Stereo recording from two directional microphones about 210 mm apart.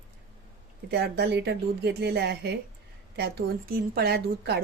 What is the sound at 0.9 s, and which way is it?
A woman's voice, 50° right (ahead or behind).